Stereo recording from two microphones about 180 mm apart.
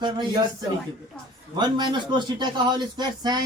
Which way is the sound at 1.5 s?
25° right (ahead or behind).